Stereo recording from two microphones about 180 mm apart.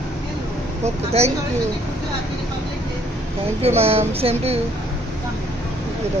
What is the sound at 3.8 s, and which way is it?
Speech, 35° right (ahead or behind).